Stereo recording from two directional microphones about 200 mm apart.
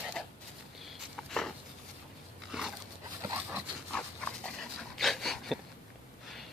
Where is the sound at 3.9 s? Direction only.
5° left (ahead or behind).